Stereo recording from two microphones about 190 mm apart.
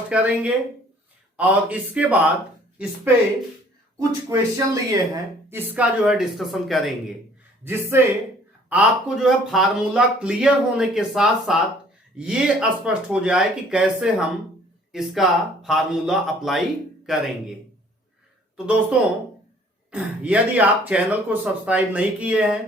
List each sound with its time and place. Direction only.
0.1 s speech: 5° right (ahead or behind)
3.9 s speech: 20° right (ahead or behind)
5.7 s speech: 5° right (ahead or behind)
7.6 s speech: 10° right (ahead or behind)
18.5 s speech: 5° right (ahead or behind)